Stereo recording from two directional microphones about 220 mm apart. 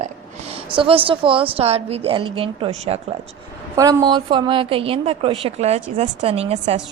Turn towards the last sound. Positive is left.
turn(degrees=-30)  # may be behind; listen again after turning